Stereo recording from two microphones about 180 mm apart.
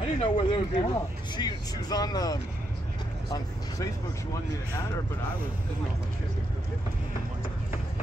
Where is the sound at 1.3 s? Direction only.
20° left (ahead or behind).